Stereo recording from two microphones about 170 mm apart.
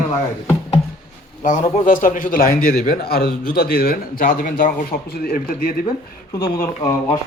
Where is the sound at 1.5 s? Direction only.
50° left (ahead or behind).